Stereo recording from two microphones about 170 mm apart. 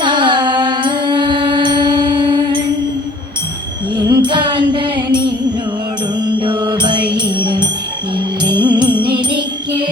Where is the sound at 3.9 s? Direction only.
25° right (ahead or behind).